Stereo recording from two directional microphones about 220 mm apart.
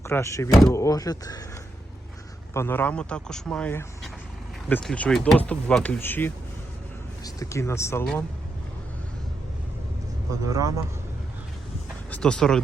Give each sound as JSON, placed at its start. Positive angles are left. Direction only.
{"t": 0.0, "sound": "speech", "side_deg": 15}
{"t": 2.5, "sound": "speech", "side_deg": 10}
{"t": 10.5, "sound": "speech", "side_deg": -15}
{"t": 12.1, "sound": "speech", "side_deg": 5}